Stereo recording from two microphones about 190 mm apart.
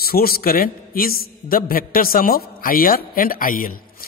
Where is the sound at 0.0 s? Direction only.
50° left (ahead or behind).